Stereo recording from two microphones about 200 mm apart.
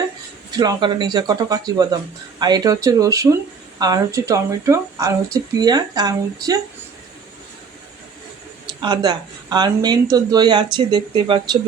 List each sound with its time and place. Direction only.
0.5 s speech: 20° right (ahead or behind)
8.6 s speech: 20° right (ahead or behind)